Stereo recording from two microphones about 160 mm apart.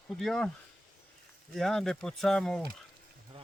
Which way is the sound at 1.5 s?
Centre (ahead or behind).